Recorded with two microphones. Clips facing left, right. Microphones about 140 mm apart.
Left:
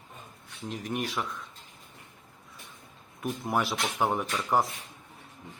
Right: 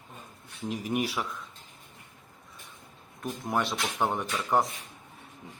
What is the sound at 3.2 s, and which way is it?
Speech, 5° left (ahead or behind).